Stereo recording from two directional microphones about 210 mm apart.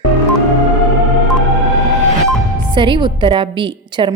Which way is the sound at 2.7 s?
25° right (ahead or behind).